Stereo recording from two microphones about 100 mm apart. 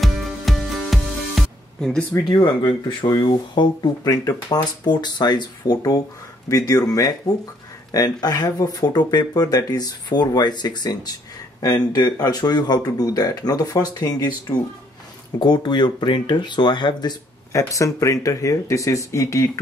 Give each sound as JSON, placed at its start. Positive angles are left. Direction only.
{"t": 0.0, "sound": "music", "side_deg": 0}
{"t": 2.2, "sound": "speech", "side_deg": 50}
{"t": 17.5, "sound": "speech", "side_deg": 30}